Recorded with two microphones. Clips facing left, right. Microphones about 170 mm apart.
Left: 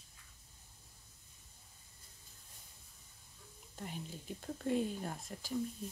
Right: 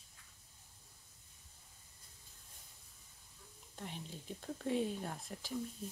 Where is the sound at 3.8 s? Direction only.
5° left (ahead or behind).